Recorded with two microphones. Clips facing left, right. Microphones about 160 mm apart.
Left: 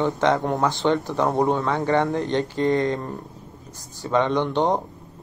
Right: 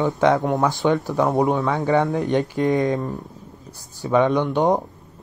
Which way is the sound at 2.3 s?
15° right (ahead or behind).